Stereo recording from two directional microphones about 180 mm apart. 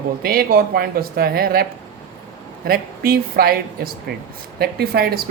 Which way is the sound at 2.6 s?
55° right (ahead or behind).